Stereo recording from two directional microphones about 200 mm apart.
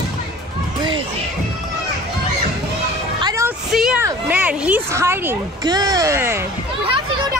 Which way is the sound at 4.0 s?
10° right (ahead or behind).